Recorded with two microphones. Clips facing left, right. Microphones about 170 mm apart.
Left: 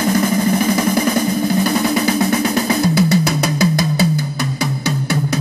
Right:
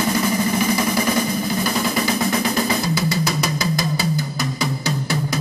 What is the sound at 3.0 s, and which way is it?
Drum, 60° left (ahead or behind).